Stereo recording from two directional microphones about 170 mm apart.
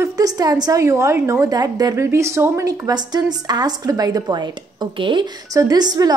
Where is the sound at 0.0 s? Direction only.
20° right (ahead or behind).